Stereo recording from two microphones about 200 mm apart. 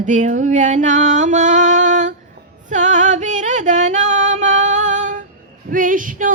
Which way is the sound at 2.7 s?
35° right (ahead or behind).